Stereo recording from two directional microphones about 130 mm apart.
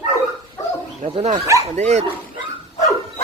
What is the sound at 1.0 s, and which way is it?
Speech, 65° right (ahead or behind).